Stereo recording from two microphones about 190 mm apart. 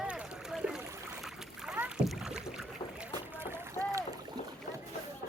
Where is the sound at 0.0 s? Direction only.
5° right (ahead or behind).